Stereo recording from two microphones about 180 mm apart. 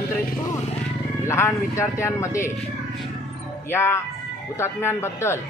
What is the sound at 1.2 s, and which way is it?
A man's voice, 15° left (ahead or behind).